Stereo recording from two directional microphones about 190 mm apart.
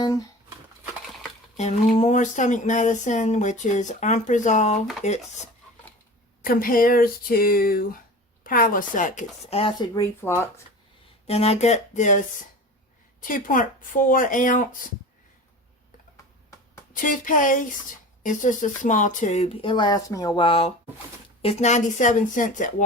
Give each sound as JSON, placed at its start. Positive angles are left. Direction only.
{"t": 0.0, "sound": "speech", "side_deg": 20}
{"t": 2.0, "sound": "speech", "side_deg": 40}
{"t": 6.4, "sound": "speech", "side_deg": 50}
{"t": 11.3, "sound": "speech", "side_deg": 35}
{"t": 13.2, "sound": "speech", "side_deg": 45}
{"t": 16.9, "sound": "speech", "side_deg": 45}